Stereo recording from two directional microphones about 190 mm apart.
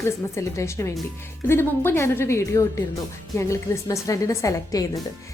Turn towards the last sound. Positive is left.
turn(degrees=15)  # may be behind; listen again after turning